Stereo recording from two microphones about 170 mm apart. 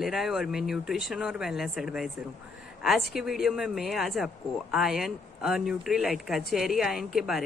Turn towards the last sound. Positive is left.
turn(degrees=0)  # may be behind; listen again after turning